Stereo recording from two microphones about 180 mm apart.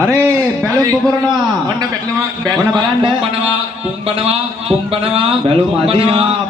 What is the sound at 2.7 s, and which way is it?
A man's voice, 25° right (ahead or behind).